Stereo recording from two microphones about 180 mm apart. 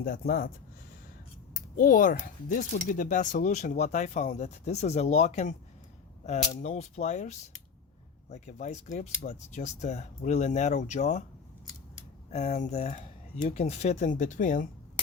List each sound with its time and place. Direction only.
0.0 s speech: 50° left (ahead or behind)
1.7 s speech: 50° left (ahead or behind)
12.3 s speech: 40° left (ahead or behind)